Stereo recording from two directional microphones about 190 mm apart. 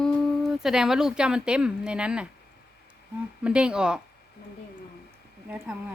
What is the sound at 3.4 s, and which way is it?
Speech, 5° right (ahead or behind).